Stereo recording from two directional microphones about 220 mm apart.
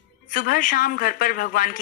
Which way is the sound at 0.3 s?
40° left (ahead or behind).